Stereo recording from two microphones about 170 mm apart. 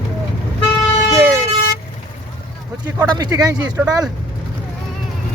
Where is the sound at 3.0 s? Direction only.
20° right (ahead or behind).